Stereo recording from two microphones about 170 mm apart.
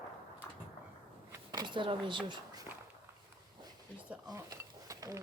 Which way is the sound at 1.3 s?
25° right (ahead or behind).